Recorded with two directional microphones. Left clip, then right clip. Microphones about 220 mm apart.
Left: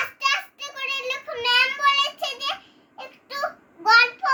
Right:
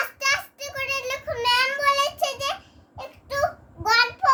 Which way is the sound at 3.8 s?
20° right (ahead or behind).